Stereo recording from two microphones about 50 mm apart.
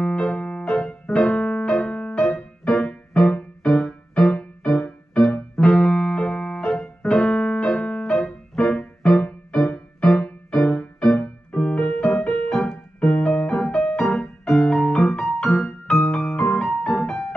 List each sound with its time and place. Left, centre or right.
0.0 s music: centre